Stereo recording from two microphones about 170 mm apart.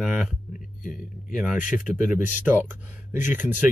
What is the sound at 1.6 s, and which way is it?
Speech, 50° left (ahead or behind).